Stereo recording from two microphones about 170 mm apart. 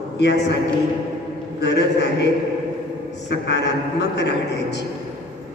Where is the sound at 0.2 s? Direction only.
90° left.